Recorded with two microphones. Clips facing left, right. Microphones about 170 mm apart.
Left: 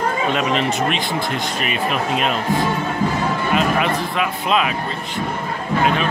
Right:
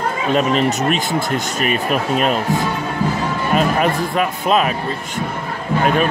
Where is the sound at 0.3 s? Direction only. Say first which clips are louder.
Right 3 dB; 40° right (ahead or behind).